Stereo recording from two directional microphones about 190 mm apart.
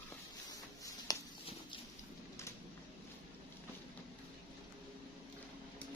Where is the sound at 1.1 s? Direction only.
20° left (ahead or behind).